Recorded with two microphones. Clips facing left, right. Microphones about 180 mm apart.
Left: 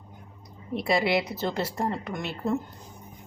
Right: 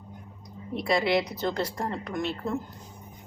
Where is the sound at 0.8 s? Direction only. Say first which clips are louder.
Even; 5° left (ahead or behind).